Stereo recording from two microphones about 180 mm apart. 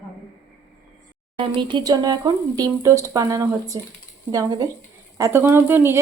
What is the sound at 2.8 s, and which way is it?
Dishes, 15° right (ahead or behind).